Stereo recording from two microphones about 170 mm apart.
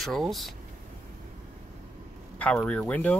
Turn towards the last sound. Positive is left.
turn(degrees=10)  # may be behind; listen again after turning